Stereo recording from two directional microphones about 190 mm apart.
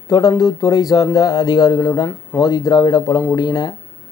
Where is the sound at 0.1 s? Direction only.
20° left (ahead or behind).